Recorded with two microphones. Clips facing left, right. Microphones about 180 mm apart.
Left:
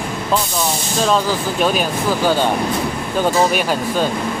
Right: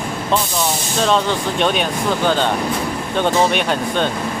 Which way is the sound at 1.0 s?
5° left (ahead or behind).